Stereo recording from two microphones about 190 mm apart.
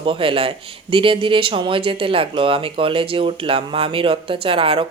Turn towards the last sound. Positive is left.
turn(degrees=-30)  # may be behind; listen again after turning